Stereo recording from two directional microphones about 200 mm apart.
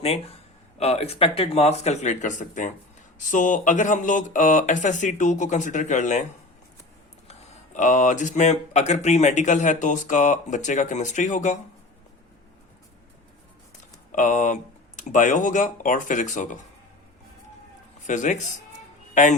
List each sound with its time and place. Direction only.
0.8 s speech: 30° left (ahead or behind)
7.3 s speech: 35° left (ahead or behind)
14.1 s speech: 40° left (ahead or behind)
18.0 s a man's voice: 40° left (ahead or behind)